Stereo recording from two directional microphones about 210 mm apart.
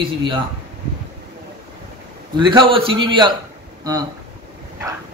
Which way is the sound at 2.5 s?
25° right (ahead or behind).